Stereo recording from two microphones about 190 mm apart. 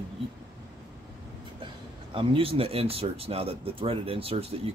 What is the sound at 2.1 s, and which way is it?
Speech, 30° right (ahead or behind).